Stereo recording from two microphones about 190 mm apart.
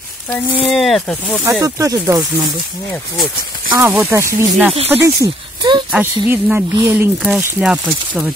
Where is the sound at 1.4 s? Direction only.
15° right (ahead or behind).